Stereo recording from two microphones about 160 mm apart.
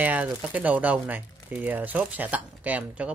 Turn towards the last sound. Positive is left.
turn(degrees=-10)  # may be behind; listen again after turning